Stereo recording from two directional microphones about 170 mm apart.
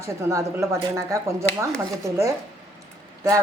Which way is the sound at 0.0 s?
15° right (ahead or behind).